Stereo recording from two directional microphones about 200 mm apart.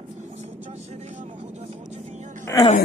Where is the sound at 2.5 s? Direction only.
10° left (ahead or behind).